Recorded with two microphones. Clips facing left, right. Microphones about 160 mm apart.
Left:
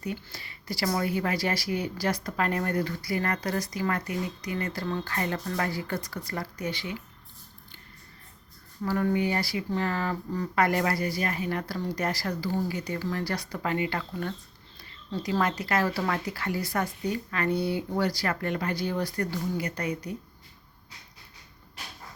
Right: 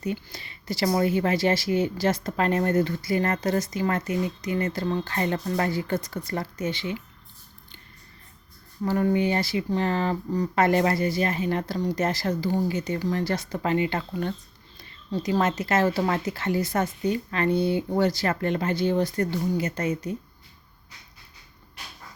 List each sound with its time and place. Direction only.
0.0 s speech: 20° right (ahead or behind)
8.8 s speech: 20° right (ahead or behind)